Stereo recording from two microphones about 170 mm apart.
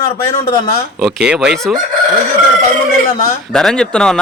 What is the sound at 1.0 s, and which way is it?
Speech, 5° right (ahead or behind).